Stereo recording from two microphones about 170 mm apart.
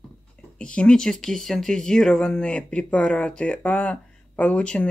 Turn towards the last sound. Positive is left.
turn(degrees=5)  # may be behind; listen again after turning